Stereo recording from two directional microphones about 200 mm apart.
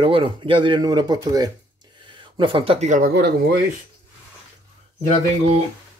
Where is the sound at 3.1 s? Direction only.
55° right (ahead or behind).